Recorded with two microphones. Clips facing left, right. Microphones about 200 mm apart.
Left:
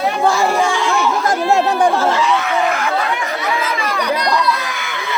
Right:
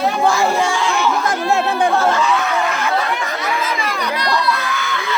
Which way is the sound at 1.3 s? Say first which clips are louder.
Left 3 dB; 40° left (ahead or behind).